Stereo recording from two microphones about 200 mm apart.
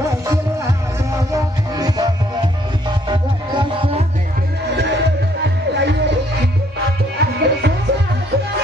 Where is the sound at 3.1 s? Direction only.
25° right (ahead or behind).